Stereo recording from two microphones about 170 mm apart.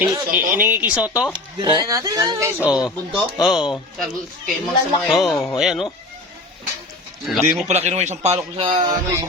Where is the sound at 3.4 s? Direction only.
5° right (ahead or behind).